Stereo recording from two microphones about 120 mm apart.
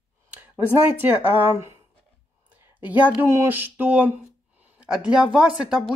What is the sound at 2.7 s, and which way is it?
Speech, 15° right (ahead or behind).